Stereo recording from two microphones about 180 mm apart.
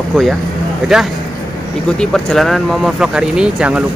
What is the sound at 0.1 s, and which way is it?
Speech, centre (ahead or behind).